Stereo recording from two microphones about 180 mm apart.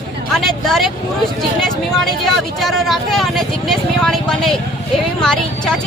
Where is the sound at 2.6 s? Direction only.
Centre (ahead or behind).